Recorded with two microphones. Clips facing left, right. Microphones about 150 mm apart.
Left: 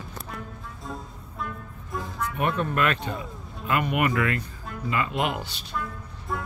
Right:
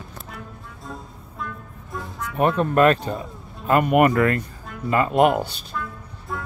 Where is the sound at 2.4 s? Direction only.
35° right (ahead or behind).